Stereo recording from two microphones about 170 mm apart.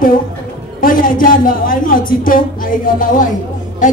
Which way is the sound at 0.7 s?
55° left (ahead or behind).